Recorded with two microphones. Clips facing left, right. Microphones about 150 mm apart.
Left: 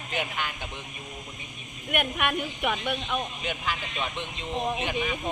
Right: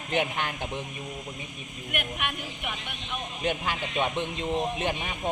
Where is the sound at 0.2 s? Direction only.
45° right (ahead or behind).